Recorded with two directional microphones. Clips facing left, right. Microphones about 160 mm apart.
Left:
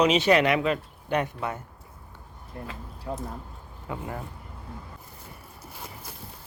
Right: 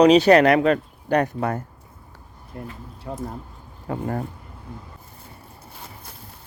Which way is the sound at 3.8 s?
45° right (ahead or behind).